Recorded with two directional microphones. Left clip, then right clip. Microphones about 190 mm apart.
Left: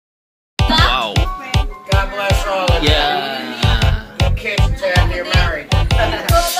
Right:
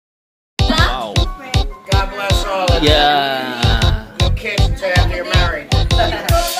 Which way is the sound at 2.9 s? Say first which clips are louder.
Right 4 dB; 45° right (ahead or behind).